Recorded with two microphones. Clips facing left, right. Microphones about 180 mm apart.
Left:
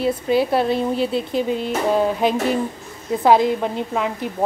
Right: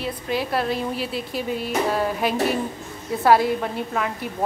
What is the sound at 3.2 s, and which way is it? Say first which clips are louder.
Speech: left 2 dB; 20° left (ahead or behind).